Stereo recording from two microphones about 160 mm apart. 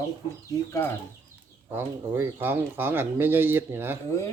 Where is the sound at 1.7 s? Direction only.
15° right (ahead or behind).